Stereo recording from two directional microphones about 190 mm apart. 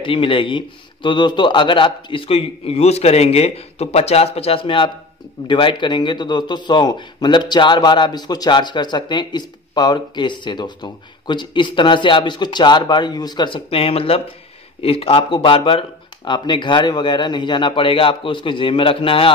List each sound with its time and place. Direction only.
0.0 s a man's voice: 25° left (ahead or behind)